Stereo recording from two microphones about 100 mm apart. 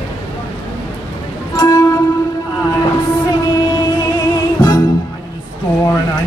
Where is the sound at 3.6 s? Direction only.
40° left (ahead or behind).